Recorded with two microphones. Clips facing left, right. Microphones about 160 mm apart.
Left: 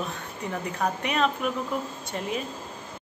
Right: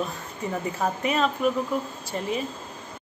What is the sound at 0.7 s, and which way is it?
Speech, centre (ahead or behind).